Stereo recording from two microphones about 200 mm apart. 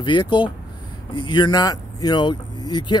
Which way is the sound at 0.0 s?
25° left (ahead or behind).